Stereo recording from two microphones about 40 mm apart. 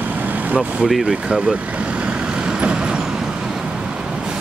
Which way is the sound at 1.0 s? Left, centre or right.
Right.